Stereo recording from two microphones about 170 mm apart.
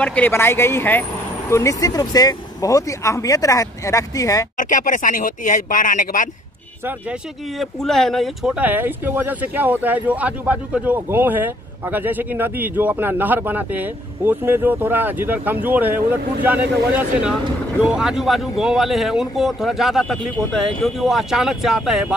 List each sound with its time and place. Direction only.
0.0 s speech: 10° left (ahead or behind)
4.6 s speech: 50° left (ahead or behind)
6.9 s speech: 5° right (ahead or behind)